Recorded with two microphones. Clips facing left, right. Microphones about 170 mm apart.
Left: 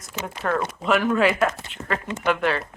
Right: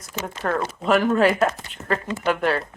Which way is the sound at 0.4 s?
35° right (ahead or behind).